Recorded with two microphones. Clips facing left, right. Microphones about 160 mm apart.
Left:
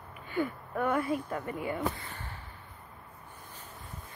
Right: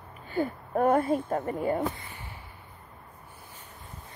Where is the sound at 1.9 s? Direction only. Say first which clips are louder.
Even; 15° right (ahead or behind).